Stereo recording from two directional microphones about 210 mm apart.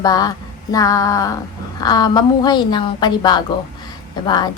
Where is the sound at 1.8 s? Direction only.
20° left (ahead or behind).